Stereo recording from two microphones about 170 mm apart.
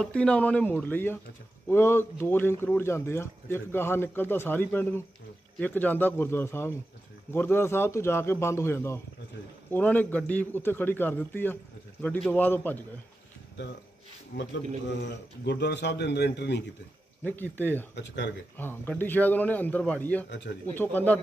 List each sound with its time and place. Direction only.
0.0 s speech: 5° left (ahead or behind)
15.0 s speech: 90° left
17.2 s speech: 10° left (ahead or behind)
17.9 s speech: 90° left
18.6 s speech: 10° left (ahead or behind)
20.2 s speech: 90° left
20.6 s speech: 10° left (ahead or behind)